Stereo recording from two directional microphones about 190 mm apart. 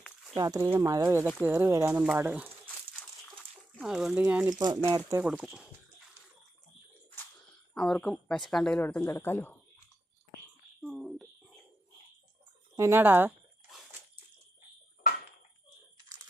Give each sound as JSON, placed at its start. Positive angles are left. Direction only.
{"t": 0.3, "sound": "speech", "side_deg": -20}
{"t": 3.8, "sound": "speech", "side_deg": 0}
{"t": 4.6, "sound": "speech", "side_deg": -25}
{"t": 7.7, "sound": "speech", "side_deg": 5}
{"t": 10.8, "sound": "a sound", "side_deg": 0}
{"t": 12.7, "sound": "speech", "side_deg": -15}